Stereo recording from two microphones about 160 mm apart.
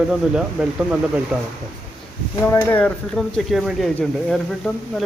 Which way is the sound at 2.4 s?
15° left (ahead or behind).